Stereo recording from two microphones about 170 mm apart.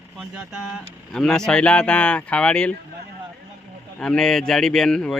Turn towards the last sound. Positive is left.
turn(degrees=5)  # may be behind; listen again after turning